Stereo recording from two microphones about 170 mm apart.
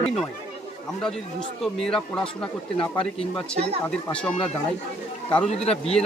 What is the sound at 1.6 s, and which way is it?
Speech, 5° left (ahead or behind).